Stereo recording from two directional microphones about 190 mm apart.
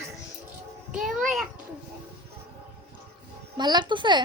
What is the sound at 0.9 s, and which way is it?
Speech, centre (ahead or behind).